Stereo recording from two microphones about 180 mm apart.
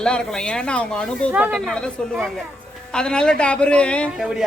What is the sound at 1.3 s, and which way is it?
A man's voice, 5° right (ahead or behind).